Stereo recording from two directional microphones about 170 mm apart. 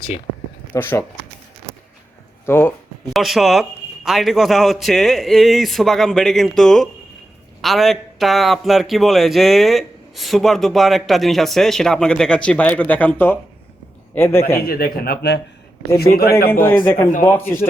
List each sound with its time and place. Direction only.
0.7 s a man's voice: 15° left (ahead or behind)
2.5 s a man's voice: 15° left (ahead or behind)
3.1 s a man's voice: centre (ahead or behind)
14.6 s speech: 60° left (ahead or behind)
16.6 s a man's voice: 15° left (ahead or behind)